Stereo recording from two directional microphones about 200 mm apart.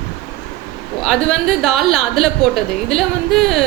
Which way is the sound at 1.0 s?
Centre (ahead or behind).